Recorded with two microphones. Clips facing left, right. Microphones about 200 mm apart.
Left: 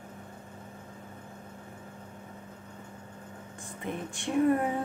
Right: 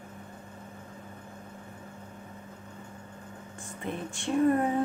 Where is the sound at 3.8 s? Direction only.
15° left (ahead or behind).